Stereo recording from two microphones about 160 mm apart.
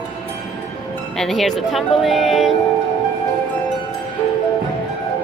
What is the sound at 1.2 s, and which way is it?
A woman's voice, centre (ahead or behind).